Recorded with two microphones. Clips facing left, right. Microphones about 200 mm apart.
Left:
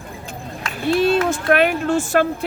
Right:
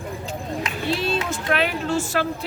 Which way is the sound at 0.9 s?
55° left (ahead or behind).